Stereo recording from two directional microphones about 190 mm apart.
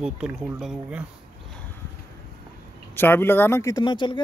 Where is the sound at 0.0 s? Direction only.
5° right (ahead or behind).